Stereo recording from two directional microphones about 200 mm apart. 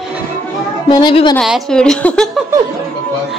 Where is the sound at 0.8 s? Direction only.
25° left (ahead or behind).